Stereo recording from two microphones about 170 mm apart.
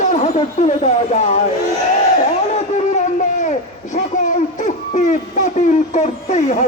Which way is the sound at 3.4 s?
45° left (ahead or behind).